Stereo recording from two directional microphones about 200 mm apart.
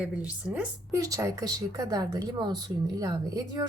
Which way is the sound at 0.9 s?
15° right (ahead or behind).